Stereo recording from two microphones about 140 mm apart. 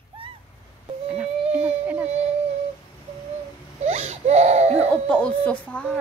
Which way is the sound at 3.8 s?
50° right (ahead or behind).